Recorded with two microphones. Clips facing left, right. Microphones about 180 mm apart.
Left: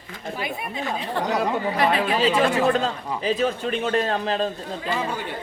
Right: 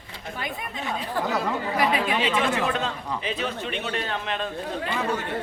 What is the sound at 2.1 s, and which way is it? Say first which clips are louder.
A man's voice: left 4 dB; 35° left (ahead or behind).